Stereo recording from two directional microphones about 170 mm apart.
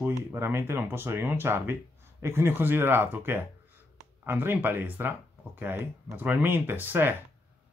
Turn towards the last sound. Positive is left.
turn(degrees=-10)  # may be behind; listen again after turning